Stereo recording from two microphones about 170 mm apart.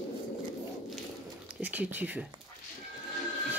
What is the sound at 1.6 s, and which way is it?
Speech, 10° right (ahead or behind).